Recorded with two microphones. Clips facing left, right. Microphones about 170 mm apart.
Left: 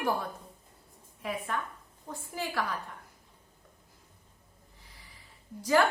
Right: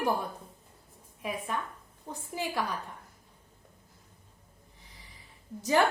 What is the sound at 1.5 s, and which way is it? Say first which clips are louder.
Speech: even; 15° right (ahead or behind).